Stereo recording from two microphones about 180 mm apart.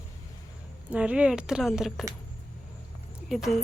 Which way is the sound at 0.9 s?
5° right (ahead or behind).